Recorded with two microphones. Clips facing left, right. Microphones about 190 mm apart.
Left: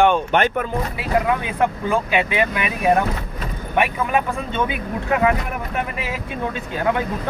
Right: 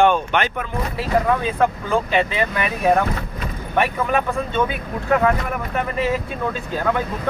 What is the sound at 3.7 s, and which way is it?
Speech, 15° left (ahead or behind).